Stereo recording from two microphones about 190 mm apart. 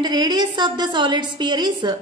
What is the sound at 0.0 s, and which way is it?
A woman's voice, 20° right (ahead or behind).